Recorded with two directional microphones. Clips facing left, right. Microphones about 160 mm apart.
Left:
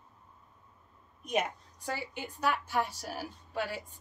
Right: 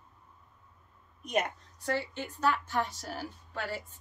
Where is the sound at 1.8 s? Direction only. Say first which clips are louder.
Right 4 dB; 10° left (ahead or behind).